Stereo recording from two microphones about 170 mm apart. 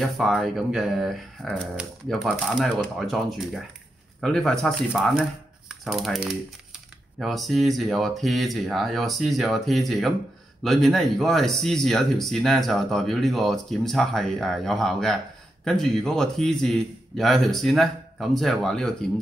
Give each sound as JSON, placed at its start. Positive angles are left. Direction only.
{"t": 0.2, "sound": "speech", "side_deg": 0}